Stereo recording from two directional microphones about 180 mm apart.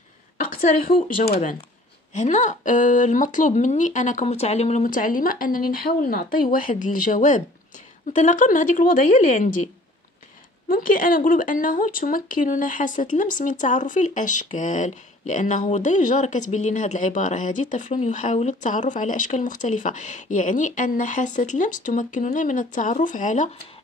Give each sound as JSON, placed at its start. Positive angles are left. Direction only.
{"t": 1.0, "sound": "speech", "side_deg": 60}
{"t": 2.1, "sound": "speech", "side_deg": 40}
{"t": 10.7, "sound": "speech", "side_deg": 50}